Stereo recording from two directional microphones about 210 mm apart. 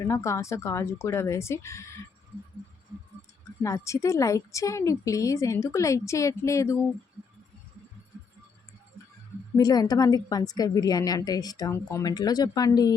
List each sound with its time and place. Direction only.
0.1 s speech: 15° left (ahead or behind)
3.2 s speech: 15° left (ahead or behind)
9.6 s speech: 20° left (ahead or behind)